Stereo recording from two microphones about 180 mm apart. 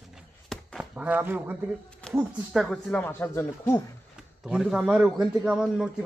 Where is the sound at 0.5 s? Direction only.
Centre (ahead or behind).